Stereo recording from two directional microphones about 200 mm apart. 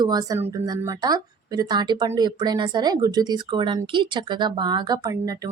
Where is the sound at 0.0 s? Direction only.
20° right (ahead or behind).